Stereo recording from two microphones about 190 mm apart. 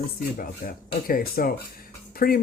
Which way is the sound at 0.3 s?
50° left (ahead or behind).